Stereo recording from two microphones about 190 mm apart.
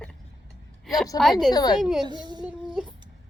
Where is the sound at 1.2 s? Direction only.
Centre (ahead or behind).